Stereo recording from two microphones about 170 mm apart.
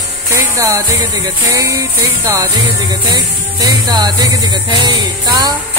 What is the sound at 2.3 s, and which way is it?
Speech, 20° right (ahead or behind).